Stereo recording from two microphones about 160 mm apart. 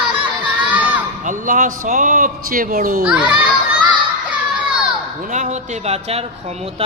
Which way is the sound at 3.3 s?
30° right (ahead or behind).